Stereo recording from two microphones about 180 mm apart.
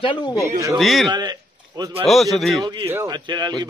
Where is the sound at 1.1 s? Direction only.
25° right (ahead or behind).